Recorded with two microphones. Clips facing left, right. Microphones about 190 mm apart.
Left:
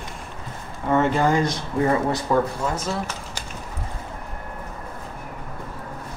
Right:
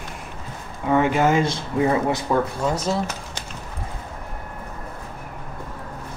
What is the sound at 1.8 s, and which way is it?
Speech, 10° right (ahead or behind).